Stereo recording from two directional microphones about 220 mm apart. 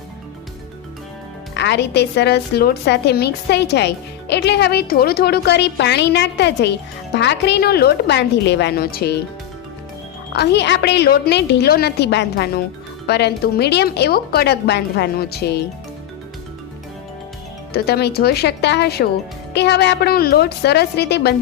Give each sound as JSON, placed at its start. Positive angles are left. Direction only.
{"t": 1.5, "sound": "a woman's voice", "side_deg": 50}
{"t": 10.3, "sound": "a woman's voice", "side_deg": 50}
{"t": 17.7, "sound": "a woman's voice", "side_deg": 45}